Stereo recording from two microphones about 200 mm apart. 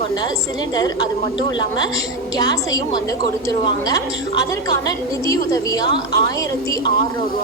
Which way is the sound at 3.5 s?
15° left (ahead or behind).